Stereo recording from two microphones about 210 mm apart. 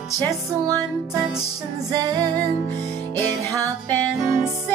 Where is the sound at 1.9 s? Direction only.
20° right (ahead or behind).